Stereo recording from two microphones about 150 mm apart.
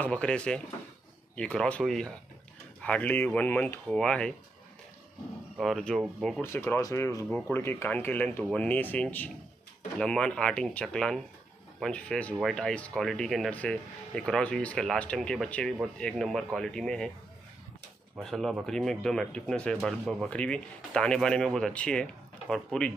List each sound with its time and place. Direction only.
0.0 s speech: 10° left (ahead or behind)
5.6 s speech: centre (ahead or behind)
6.4 s speech: 15° left (ahead or behind)
7.2 s speech: 5° left (ahead or behind)
7.5 s speech: 15° left (ahead or behind)
18.2 s speech: centre (ahead or behind)